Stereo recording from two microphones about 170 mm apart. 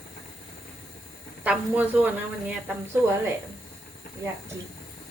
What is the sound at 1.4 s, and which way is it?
Speech, 5° right (ahead or behind).